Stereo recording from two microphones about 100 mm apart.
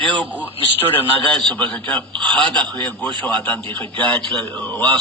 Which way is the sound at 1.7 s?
15° left (ahead or behind).